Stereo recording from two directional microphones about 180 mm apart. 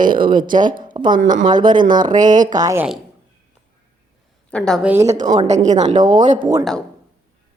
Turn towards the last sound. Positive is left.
turn(degrees=-20)  # may be behind; listen again after turning